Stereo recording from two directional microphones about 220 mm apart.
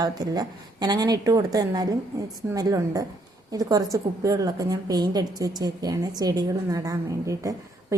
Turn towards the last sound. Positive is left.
turn(degrees=-15)  # may be behind; listen again after turning